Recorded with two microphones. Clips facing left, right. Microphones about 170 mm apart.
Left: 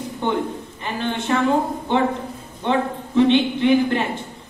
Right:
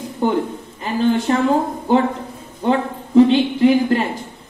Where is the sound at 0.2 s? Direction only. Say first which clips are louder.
Right 4 dB; 35° right (ahead or behind).